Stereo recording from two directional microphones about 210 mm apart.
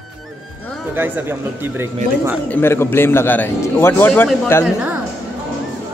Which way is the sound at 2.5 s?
10° left (ahead or behind).